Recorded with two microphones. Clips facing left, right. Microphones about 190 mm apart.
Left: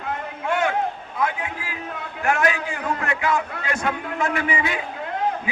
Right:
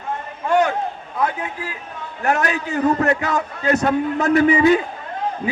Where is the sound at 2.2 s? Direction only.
40° right (ahead or behind).